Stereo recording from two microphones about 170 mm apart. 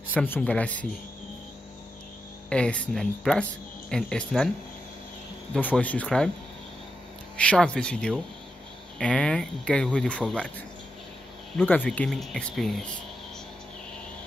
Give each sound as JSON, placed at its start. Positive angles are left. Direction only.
{"t": 0.1, "sound": "speech", "side_deg": 10}
{"t": 2.5, "sound": "speech", "side_deg": 5}
{"t": 5.5, "sound": "speech", "side_deg": 10}
{"t": 7.3, "sound": "speech", "side_deg": 5}
{"t": 11.5, "sound": "speech", "side_deg": 10}